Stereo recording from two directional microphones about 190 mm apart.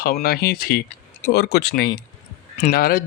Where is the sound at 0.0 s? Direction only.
55° left (ahead or behind).